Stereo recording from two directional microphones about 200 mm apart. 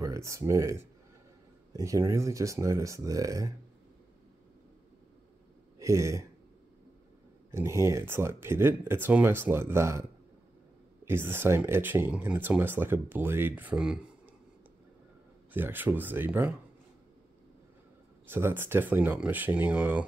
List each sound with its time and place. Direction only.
0.0 s speech: 15° right (ahead or behind)
5.8 s a sound: 15° right (ahead or behind)
7.5 s speech: 15° right (ahead or behind)
11.1 s speech: 10° right (ahead or behind)
15.5 s speech: 10° right (ahead or behind)
18.3 s speech: 10° right (ahead or behind)